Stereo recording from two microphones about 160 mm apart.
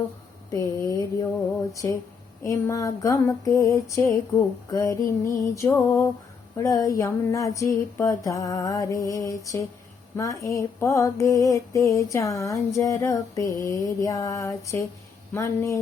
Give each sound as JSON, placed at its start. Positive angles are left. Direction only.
{"t": 0.5, "sound": "mantra", "side_deg": 20}
{"t": 4.7, "sound": "music", "side_deg": 20}
{"t": 6.6, "sound": "mantra", "side_deg": 20}